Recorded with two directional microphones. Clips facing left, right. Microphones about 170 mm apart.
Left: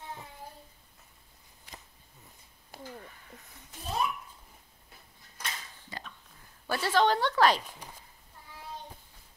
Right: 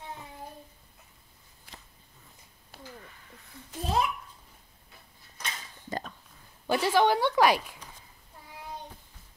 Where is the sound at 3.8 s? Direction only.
90° right.